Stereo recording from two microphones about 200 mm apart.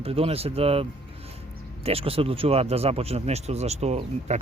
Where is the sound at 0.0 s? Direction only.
30° right (ahead or behind).